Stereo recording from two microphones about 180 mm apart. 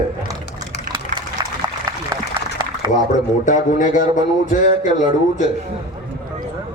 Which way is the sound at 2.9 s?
45° left (ahead or behind).